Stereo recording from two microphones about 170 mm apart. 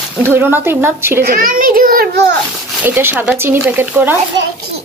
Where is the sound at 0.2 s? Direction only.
15° right (ahead or behind).